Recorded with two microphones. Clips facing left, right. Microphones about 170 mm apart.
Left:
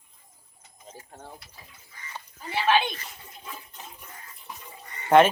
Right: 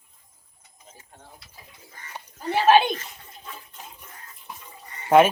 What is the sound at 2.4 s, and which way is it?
Speech, 45° right (ahead or behind).